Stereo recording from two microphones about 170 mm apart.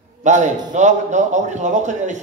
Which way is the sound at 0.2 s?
45° right (ahead or behind).